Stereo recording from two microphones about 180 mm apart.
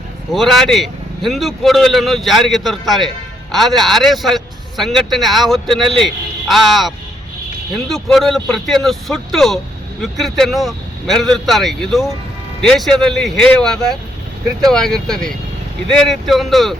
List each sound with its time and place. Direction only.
0.3 s speech: centre (ahead or behind)